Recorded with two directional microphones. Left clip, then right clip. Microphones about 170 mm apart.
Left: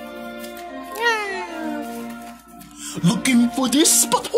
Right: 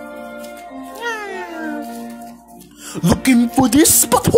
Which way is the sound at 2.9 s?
25° right (ahead or behind).